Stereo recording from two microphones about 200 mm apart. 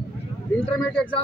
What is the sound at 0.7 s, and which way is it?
Speech, 5° left (ahead or behind).